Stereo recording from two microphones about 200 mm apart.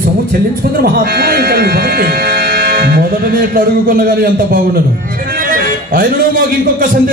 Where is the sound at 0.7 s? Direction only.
45° right (ahead or behind).